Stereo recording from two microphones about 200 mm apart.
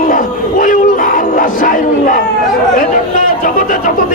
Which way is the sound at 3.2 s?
40° left (ahead or behind).